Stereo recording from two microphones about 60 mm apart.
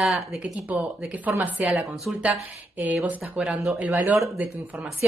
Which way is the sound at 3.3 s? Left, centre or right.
Right.